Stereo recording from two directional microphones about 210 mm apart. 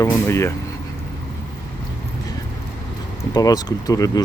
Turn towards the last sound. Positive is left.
turn(degrees=15)  # may be behind; listen again after turning